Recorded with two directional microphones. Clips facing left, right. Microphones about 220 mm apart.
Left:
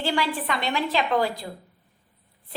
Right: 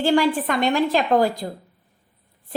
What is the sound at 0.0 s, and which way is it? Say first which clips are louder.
A woman's voice: right 8 dB; 45° right (ahead or behind).